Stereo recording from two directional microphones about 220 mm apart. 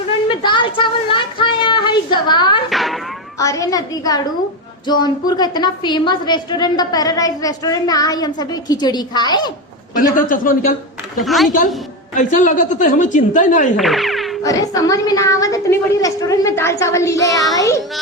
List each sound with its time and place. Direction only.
0.3 s a sound: 20° left (ahead or behind)
2.6 s a sound: centre (ahead or behind)
3.3 s a woman's voice: 15° left (ahead or behind)
9.9 s a woman's voice: 40° left (ahead or behind)
11.2 s a woman's voice: centre (ahead or behind)
12.1 s a woman's voice: 35° left (ahead or behind)
13.7 s music: centre (ahead or behind)
14.4 s a woman's voice: 15° left (ahead or behind)